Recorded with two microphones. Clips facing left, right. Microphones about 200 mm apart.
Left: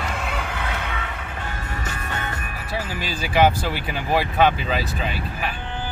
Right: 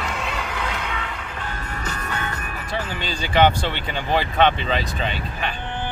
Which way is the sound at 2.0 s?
40° right (ahead or behind).